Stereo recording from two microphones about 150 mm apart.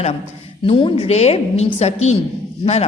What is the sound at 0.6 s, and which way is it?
A man's voice, 35° left (ahead or behind).